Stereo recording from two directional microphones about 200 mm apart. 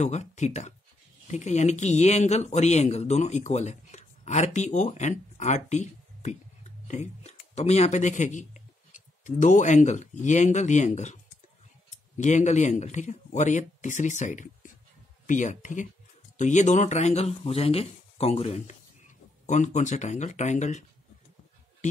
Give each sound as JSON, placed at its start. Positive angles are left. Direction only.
{"t": 0.0, "sound": "speech", "side_deg": 35}
{"t": 12.2, "sound": "speech", "side_deg": 35}